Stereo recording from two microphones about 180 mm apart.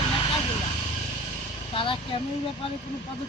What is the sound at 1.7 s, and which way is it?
Vehicle, 30° left (ahead or behind).